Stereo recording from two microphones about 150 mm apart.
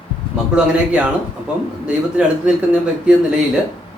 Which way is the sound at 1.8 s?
5° right (ahead or behind).